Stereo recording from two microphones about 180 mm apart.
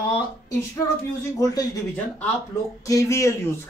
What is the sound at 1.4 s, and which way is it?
Speech, 20° left (ahead or behind).